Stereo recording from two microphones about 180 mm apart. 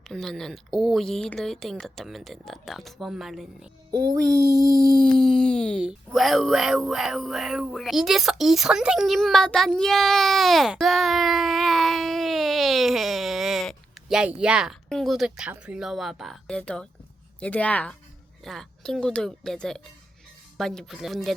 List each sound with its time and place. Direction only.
0.0 s speech: centre (ahead or behind)
4.1 s music: 20° right (ahead or behind)
4.9 s a sound: 5° left (ahead or behind)
5.8 s a woman's voice: 5° right (ahead or behind)